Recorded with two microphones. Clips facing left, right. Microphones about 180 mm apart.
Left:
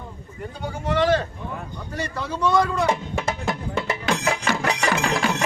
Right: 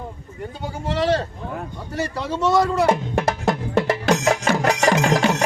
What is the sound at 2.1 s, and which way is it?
Speech, 25° right (ahead or behind).